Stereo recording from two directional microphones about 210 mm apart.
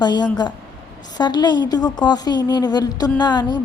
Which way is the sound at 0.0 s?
20° left (ahead or behind).